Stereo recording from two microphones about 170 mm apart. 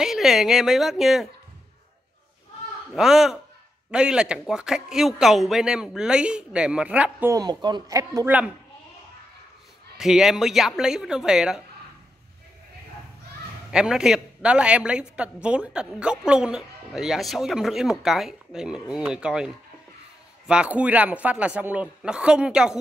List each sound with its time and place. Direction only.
0.0 s a woman's voice: centre (ahead or behind)
2.9 s a woman's voice: centre (ahead or behind)
7.3 s speech: 25° right (ahead or behind)
9.9 s a woman's voice: 5° right (ahead or behind)
13.7 s a woman's voice: 5° right (ahead or behind)